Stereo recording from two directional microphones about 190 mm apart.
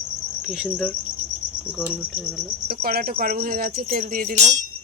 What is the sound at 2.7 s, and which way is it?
Speech, 50° right (ahead or behind).